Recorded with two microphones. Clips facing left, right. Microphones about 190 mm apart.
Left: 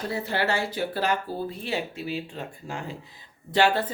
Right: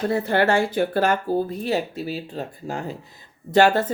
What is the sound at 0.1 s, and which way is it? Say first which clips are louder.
Speech: right 6 dB; 55° right (ahead or behind).